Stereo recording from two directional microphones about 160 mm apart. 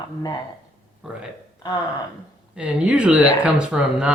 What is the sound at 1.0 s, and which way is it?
Speech, 5° right (ahead or behind).